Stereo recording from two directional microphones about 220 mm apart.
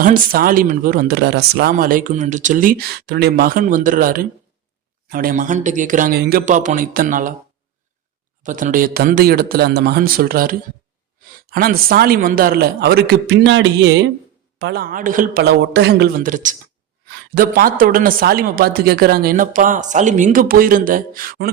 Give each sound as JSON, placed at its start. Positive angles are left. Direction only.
{"t": 0.0, "sound": "speech", "side_deg": -40}
{"t": 8.4, "sound": "a man's voice", "side_deg": -35}